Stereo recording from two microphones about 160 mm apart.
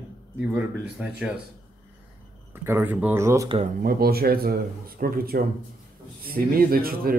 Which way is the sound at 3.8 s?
70° right (ahead or behind).